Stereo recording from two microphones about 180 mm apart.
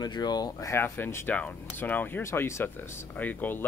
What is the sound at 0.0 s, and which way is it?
Speech, 25° left (ahead or behind).